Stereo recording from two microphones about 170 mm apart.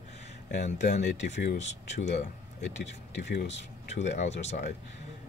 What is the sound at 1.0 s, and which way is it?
Speech, 90° left.